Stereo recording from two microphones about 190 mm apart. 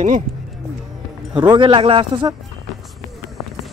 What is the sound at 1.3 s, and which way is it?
Speech, 25° right (ahead or behind).